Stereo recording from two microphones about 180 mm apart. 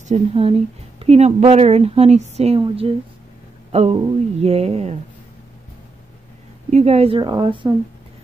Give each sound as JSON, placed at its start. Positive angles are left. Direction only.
{"t": 0.1, "sound": "speech", "side_deg": -35}
{"t": 6.7, "sound": "a woman's voice", "side_deg": -35}